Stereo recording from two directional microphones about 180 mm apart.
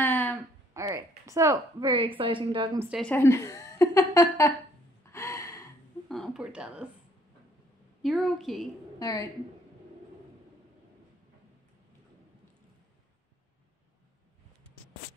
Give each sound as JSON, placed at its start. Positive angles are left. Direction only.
{"t": 0.0, "sound": "a sound", "side_deg": 10}
{"t": 0.7, "sound": "a woman's voice", "side_deg": -15}
{"t": 3.0, "sound": "a woman's voice", "side_deg": 10}
{"t": 5.1, "sound": "gasp", "side_deg": 15}
{"t": 6.0, "sound": "speech", "side_deg": 0}
{"t": 8.0, "sound": "a woman's voice", "side_deg": 0}
{"t": 9.0, "sound": "a woman's voice", "side_deg": 20}